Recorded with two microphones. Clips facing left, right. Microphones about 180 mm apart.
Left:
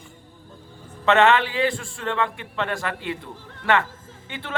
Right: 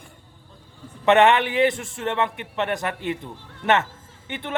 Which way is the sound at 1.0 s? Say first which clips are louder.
Right 1 dB; 20° right (ahead or behind).